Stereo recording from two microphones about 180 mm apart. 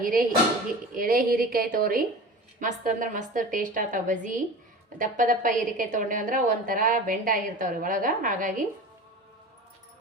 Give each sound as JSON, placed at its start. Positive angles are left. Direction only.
{"t": 0.0, "sound": "a woman's voice", "side_deg": -50}